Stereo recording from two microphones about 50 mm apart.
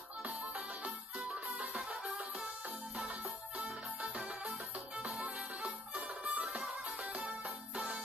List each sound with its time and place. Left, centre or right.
0.5 s music: centre
3.1 s music: right